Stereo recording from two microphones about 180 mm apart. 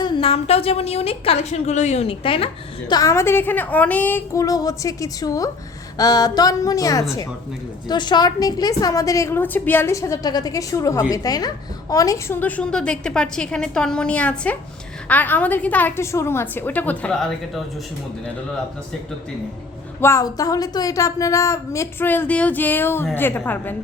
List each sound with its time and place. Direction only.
0.0 s a woman's voice: 30° left (ahead or behind)
2.9 s a woman's voice: 15° left (ahead or behind)
20.0 s a woman's voice: 15° left (ahead or behind)